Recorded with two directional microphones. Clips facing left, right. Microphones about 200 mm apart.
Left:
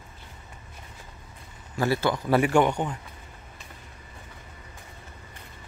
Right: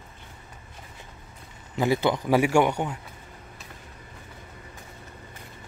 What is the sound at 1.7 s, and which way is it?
A man's voice, 15° right (ahead or behind).